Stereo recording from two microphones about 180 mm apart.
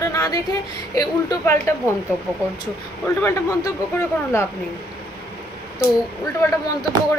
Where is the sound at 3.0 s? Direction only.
15° left (ahead or behind).